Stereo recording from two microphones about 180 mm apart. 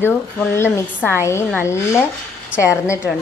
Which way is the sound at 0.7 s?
15° left (ahead or behind).